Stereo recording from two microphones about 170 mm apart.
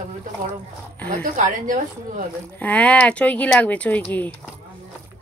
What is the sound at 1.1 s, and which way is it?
A woman's voice, 50° right (ahead or behind).